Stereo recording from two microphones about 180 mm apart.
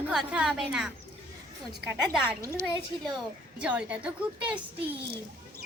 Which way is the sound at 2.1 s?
5° right (ahead or behind).